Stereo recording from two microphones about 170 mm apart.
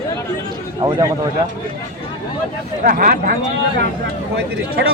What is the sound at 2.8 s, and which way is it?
Speech, 55° right (ahead or behind).